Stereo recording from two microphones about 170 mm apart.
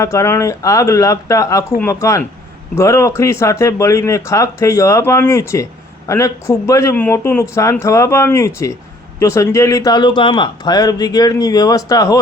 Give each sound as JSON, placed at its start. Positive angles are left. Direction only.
{"t": 0.0, "sound": "speech", "side_deg": 15}